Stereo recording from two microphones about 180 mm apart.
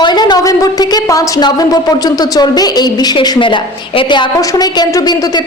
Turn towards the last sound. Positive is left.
turn(degrees=25)  # may be behind; listen again after turning